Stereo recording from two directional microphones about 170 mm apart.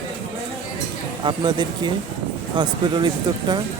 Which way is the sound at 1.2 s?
25° right (ahead or behind).